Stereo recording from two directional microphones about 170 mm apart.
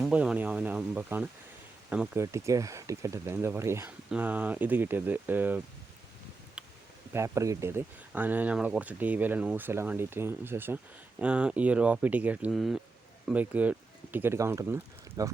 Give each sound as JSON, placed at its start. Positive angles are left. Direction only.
{"t": 0.0, "sound": "speech", "side_deg": -5}
{"t": 2.2, "sound": "speech", "side_deg": -20}
{"t": 6.6, "sound": "a sound", "side_deg": -5}
{"t": 7.1, "sound": "speech", "side_deg": -15}